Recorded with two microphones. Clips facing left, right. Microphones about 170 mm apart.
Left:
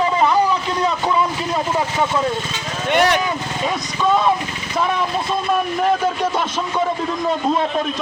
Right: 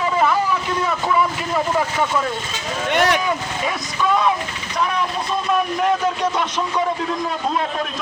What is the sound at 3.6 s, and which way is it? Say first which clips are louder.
Speech: left 2 dB; 25° left (ahead or behind).